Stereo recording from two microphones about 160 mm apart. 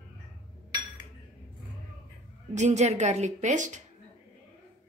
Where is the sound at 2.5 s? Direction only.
45° right (ahead or behind).